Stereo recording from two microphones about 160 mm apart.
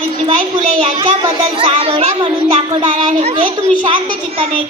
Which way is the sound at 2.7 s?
30° right (ahead or behind).